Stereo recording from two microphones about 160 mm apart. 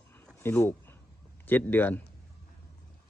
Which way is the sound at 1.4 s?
10° left (ahead or behind).